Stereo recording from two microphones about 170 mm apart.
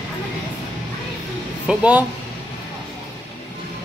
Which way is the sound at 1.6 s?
5° right (ahead or behind).